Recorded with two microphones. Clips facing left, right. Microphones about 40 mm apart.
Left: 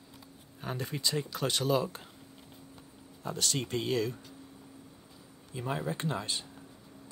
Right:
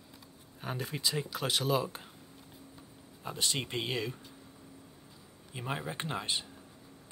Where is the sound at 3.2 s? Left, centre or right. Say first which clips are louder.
Left 1 dB; right.